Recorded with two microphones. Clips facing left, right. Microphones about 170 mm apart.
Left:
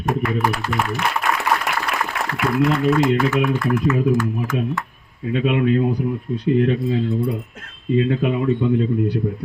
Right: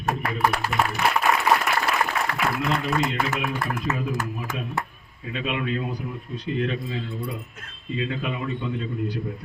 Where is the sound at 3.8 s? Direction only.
55° left (ahead or behind).